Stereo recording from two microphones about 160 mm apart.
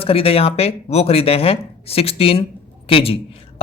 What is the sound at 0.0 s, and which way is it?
A man's voice, 35° left (ahead or behind).